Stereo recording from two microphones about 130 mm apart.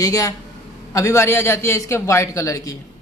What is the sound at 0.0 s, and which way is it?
Speech, 25° left (ahead or behind).